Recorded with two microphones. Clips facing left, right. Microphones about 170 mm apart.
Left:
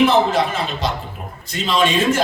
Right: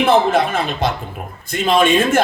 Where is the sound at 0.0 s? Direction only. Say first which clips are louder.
Right 1 dB; 55° right (ahead or behind).